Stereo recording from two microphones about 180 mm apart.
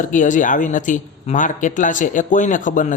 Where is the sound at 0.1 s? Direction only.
45° left (ahead or behind).